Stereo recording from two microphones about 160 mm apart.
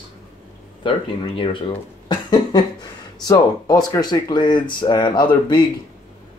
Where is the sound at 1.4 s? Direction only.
30° left (ahead or behind).